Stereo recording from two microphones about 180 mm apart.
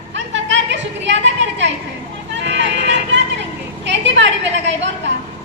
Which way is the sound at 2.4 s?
75° right (ahead or behind).